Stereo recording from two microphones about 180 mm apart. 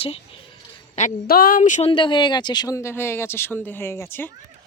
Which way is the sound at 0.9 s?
50° left (ahead or behind).